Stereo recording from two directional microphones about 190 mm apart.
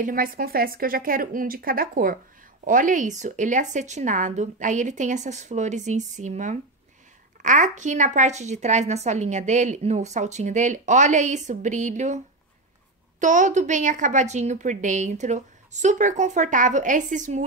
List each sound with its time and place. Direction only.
0.0 s a woman's voice: 45° right (ahead or behind)
13.2 s a woman's voice: 40° right (ahead or behind)